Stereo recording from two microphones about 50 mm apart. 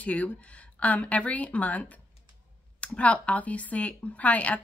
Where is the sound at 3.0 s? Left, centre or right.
Left.